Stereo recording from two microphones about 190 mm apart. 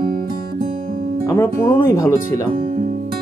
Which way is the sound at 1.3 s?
10° left (ahead or behind).